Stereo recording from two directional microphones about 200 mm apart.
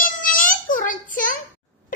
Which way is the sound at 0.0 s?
45° left (ahead or behind).